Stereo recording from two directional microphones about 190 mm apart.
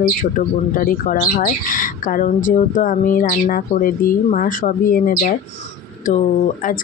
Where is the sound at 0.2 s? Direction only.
50° left (ahead or behind).